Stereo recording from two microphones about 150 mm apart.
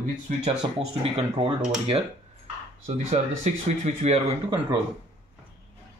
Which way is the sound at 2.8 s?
45° right (ahead or behind).